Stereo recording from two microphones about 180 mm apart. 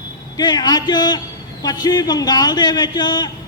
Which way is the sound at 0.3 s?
20° left (ahead or behind).